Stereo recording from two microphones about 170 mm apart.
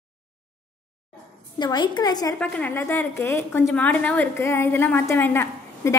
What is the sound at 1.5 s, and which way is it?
Speech, 25° left (ahead or behind).